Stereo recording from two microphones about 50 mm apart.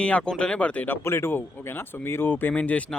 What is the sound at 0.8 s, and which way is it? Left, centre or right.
Speech, left.